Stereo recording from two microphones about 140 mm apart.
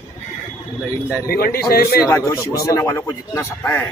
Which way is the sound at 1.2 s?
90° left.